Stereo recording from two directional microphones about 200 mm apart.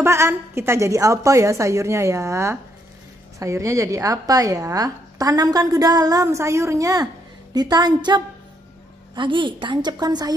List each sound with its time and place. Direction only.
0.0 s a woman's voice: 10° right (ahead or behind)